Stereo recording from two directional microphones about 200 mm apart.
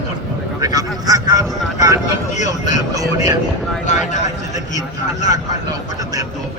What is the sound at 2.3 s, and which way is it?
Speech, 35° left (ahead or behind).